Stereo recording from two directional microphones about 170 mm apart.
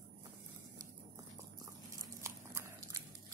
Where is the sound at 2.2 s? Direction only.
15° right (ahead or behind).